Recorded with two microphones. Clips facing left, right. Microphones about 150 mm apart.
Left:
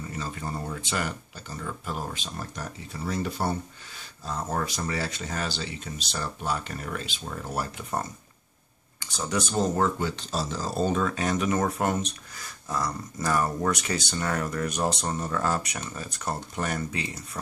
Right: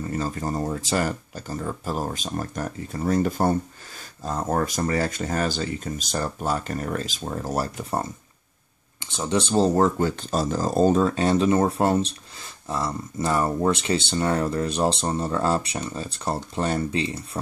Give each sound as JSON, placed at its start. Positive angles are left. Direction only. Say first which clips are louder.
{"t": 0.1, "sound": "speech", "louder": "right 7 dB", "side_deg": -45}